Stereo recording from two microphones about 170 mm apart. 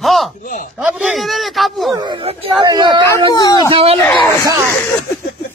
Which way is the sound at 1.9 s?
25° right (ahead or behind).